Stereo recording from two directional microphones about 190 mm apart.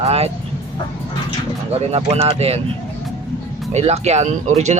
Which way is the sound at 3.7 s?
35° right (ahead or behind).